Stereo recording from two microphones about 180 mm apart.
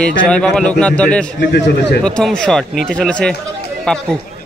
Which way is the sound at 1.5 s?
70° left (ahead or behind).